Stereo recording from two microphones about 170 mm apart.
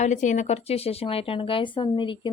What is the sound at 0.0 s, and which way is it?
Speech, 45° left (ahead or behind).